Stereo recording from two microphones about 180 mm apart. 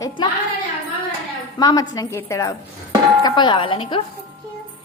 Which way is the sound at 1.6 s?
20° left (ahead or behind).